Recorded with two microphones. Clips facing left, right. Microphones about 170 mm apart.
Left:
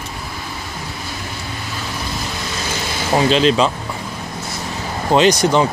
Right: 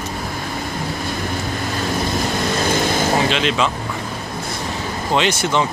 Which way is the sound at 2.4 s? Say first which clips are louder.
Right 7 dB; 55° right (ahead or behind).